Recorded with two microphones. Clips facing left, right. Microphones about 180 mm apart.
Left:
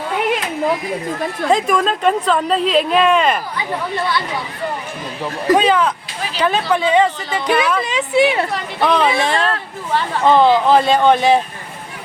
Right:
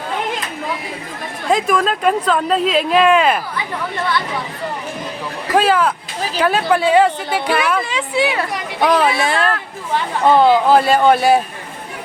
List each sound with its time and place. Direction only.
1.5 s speech: 5° right (ahead or behind)
5.5 s speech: 5° right (ahead or behind)
7.9 s a woman's voice: 20° left (ahead or behind)
8.5 s speech: 10° right (ahead or behind)